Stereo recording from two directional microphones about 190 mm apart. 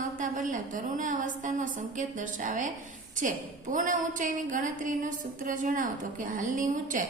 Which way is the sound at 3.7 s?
45° right (ahead or behind).